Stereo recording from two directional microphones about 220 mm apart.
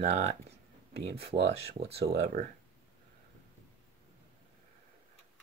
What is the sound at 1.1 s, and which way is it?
Speech, 50° right (ahead or behind).